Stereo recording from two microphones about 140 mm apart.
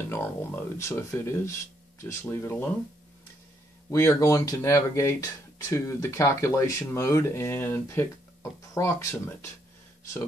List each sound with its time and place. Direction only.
0.1 s speech: 15° left (ahead or behind)
3.9 s speech: 20° left (ahead or behind)